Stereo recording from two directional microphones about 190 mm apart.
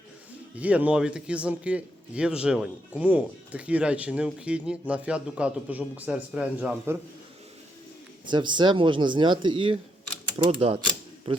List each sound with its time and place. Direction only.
0.5 s a man's voice: 5° right (ahead or behind)
8.3 s speech: 25° right (ahead or behind)